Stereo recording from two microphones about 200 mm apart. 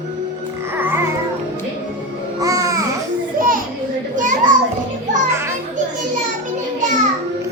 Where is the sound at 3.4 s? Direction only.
45° right (ahead or behind).